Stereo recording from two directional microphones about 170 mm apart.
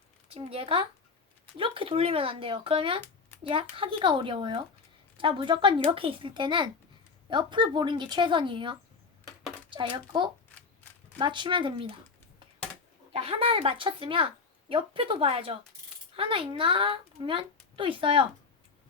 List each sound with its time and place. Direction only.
0.3 s a child's voice: 35° right (ahead or behind)
9.2 s a sound: 30° right (ahead or behind)
11.2 s speech: 30° right (ahead or behind)
13.1 s a child's voice: 35° right (ahead or behind)